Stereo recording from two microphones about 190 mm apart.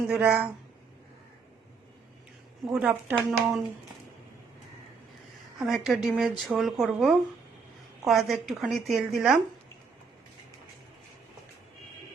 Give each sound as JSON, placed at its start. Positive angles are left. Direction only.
{"t": 0.1, "sound": "speech", "side_deg": -5}
{"t": 2.6, "sound": "speech", "side_deg": -10}
{"t": 3.2, "sound": "speech", "side_deg": 0}
{"t": 5.5, "sound": "speech", "side_deg": 0}